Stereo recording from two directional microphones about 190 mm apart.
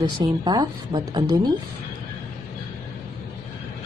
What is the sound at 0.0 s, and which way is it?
Speech, 20° right (ahead or behind).